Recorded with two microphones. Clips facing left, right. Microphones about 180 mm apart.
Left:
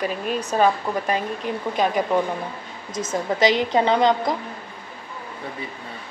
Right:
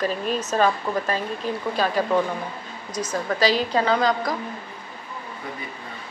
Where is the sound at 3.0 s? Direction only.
25° left (ahead or behind).